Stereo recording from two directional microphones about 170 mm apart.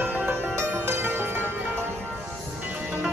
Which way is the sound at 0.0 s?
10° right (ahead or behind).